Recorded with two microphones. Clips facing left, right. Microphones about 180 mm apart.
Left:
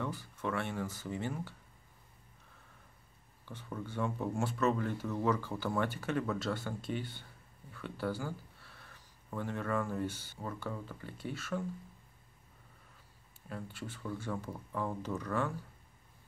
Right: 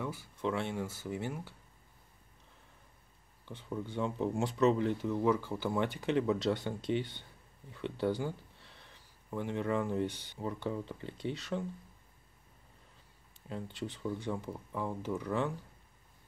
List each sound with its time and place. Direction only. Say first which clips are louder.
0.0 s speech: right 2 dB; 10° right (ahead or behind)
3.4 s speech: right 3 dB; 15° right (ahead or behind)
13.5 s speech: right 3 dB; 20° right (ahead or behind)